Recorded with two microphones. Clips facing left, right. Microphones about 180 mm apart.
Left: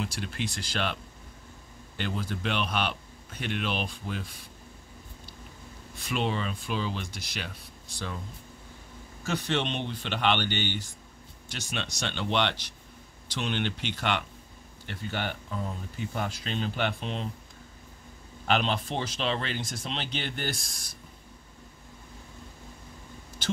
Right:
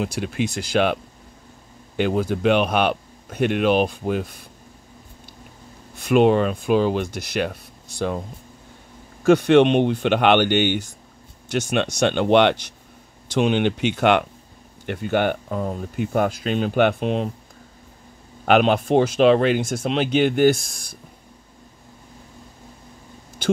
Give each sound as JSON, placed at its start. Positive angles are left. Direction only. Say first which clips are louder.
{"t": 0.0, "sound": "speech", "louder": "right 9 dB", "side_deg": -50}
{"t": 2.0, "sound": "speech", "louder": "right 12 dB", "side_deg": -50}
{"t": 5.9, "sound": "speech", "louder": "right 14 dB", "side_deg": -55}
{"t": 18.4, "sound": "speech", "louder": "right 11 dB", "side_deg": -55}